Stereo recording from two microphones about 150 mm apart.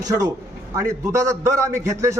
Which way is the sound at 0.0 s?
25° right (ahead or behind).